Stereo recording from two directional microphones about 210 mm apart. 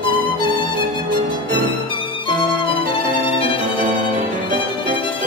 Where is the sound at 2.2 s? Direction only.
25° left (ahead or behind).